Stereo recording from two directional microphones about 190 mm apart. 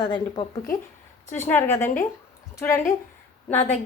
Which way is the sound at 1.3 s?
10° left (ahead or behind).